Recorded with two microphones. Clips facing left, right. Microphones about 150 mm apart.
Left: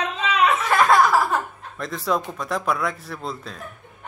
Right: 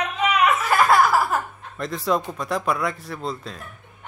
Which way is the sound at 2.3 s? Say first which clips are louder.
Even; centre (ahead or behind).